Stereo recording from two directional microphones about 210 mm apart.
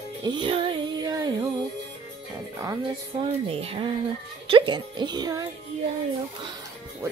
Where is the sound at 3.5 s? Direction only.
30° right (ahead or behind).